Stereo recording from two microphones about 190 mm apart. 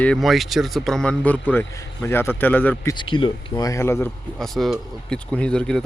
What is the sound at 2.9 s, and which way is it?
Speech, 25° left (ahead or behind).